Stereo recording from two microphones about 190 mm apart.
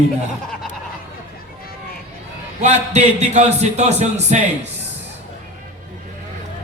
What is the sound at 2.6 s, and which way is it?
A man's voice, 35° right (ahead or behind).